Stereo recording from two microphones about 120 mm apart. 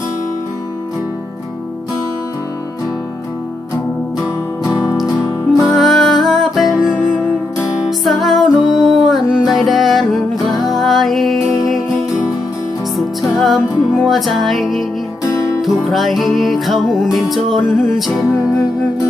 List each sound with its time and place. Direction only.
5.7 s music: centre (ahead or behind)
13.0 s music: centre (ahead or behind)
15.2 s music: 25° left (ahead or behind)
15.6 s music: centre (ahead or behind)